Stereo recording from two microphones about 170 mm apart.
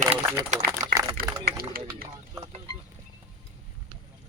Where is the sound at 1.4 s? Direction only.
60° right (ahead or behind).